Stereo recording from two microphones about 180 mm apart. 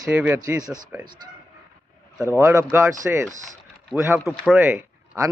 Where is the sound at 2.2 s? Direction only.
15° right (ahead or behind).